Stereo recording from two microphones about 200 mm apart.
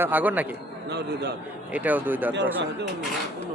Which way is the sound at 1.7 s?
10° right (ahead or behind).